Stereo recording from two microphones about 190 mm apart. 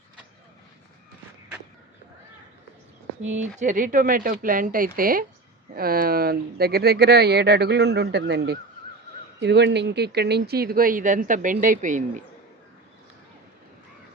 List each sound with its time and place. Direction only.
3.4 s speech: 40° right (ahead or behind)